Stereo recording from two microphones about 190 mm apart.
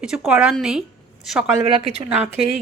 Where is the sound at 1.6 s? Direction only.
30° right (ahead or behind).